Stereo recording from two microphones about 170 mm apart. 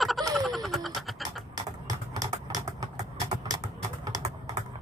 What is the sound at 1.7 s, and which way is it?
Typing, 20° right (ahead or behind).